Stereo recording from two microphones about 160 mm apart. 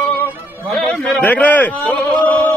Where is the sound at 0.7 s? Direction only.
Centre (ahead or behind).